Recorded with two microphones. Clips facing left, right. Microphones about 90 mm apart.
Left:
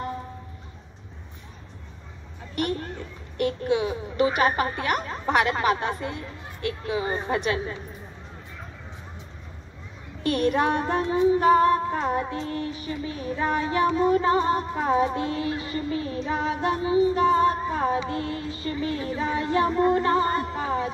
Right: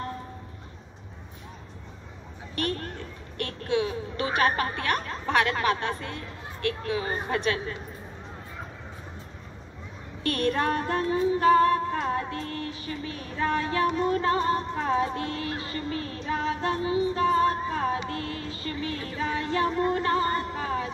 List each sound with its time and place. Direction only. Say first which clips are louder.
2.5 s a sound: left 3 dB; 15° left (ahead or behind)
3.3 s a woman's voice: left 4 dB; 15° left (ahead or behind)
10.2 s female singing: left 3 dB; 15° left (ahead or behind)
17.1 s music: left 3 dB; 20° left (ahead or behind)
17.7 s female singing: left 3 dB; 20° left (ahead or behind)